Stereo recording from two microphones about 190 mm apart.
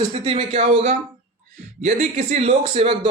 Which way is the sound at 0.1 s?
30° right (ahead or behind).